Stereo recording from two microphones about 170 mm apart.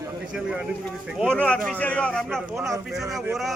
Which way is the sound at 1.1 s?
5° left (ahead or behind).